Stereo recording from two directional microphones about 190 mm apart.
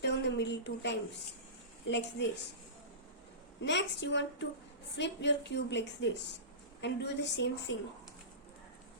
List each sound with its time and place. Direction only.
0.0 s a sound: 65° left (ahead or behind)
1.9 s a woman's voice: 65° left (ahead or behind)
3.6 s a woman's voice: 70° left (ahead or behind)